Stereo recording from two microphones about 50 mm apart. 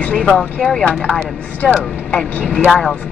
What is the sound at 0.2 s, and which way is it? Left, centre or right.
Speech, centre.